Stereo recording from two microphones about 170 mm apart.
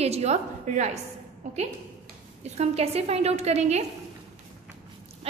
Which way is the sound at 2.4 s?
40° right (ahead or behind).